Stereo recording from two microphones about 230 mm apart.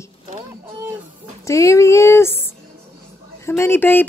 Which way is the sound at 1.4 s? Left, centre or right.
Centre.